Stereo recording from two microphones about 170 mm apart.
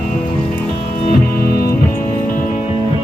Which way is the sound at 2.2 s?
50° left (ahead or behind).